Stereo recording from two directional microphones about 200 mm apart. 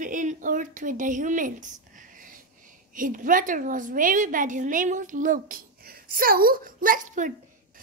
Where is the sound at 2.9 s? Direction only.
40° right (ahead or behind).